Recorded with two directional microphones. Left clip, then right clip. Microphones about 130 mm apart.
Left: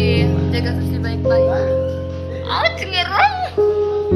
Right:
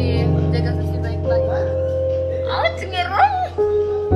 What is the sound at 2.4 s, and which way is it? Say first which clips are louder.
Music: left 1 dB; 50° right (ahead or behind).